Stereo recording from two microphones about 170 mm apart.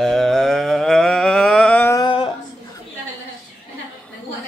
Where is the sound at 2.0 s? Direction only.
30° left (ahead or behind).